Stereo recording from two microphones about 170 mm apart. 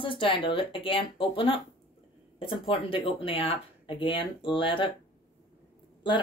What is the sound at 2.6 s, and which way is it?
Speech, 35° left (ahead or behind).